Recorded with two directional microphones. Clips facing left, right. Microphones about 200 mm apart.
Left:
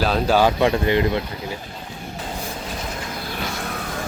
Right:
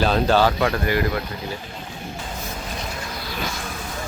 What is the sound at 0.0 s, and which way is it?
Speech, 5° left (ahead or behind).